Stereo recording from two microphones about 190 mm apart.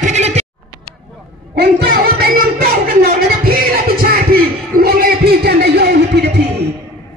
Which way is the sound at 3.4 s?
50° right (ahead or behind).